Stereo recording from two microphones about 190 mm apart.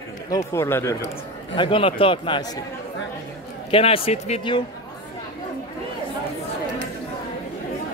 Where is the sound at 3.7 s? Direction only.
30° left (ahead or behind).